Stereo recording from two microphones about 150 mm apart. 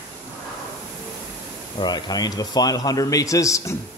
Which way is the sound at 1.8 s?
25° left (ahead or behind).